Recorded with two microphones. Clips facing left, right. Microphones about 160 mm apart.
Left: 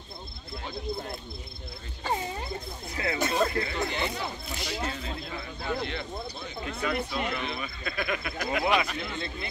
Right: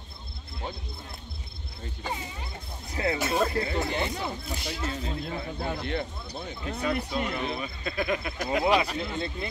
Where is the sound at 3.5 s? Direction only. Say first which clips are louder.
Right 2 dB; 30° right (ahead or behind).